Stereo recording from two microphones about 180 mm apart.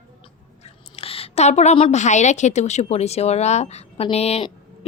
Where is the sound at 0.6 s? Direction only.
35° left (ahead or behind).